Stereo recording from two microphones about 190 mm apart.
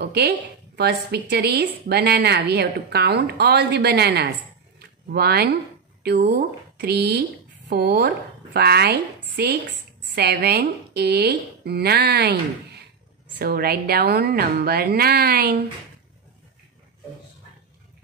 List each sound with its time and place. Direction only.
0.0 s a woman's voice: 55° right (ahead or behind)
4.7 s a sound: 55° right (ahead or behind)
6.0 s a woman's voice: 55° right (ahead or behind)